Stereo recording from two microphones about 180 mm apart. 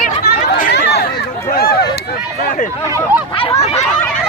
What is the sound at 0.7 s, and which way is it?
Chatter, 65° left (ahead or behind).